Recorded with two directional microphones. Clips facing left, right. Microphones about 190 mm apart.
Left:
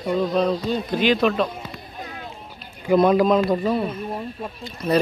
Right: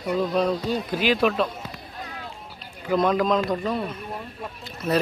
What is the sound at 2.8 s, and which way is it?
A man's voice, 10° left (ahead or behind).